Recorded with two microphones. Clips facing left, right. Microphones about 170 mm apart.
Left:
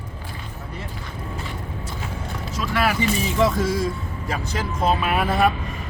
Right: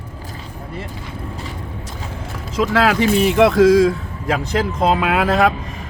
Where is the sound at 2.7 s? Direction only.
90° right.